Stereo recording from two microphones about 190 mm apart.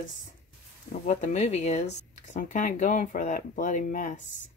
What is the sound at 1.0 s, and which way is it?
Speech, 40° left (ahead or behind).